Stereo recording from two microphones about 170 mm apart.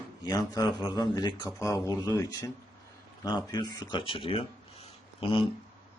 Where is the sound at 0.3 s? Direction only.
25° left (ahead or behind).